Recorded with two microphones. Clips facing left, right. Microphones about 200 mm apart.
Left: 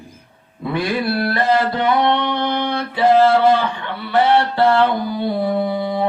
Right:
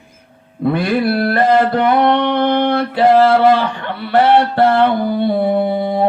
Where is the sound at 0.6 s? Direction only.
55° right (ahead or behind).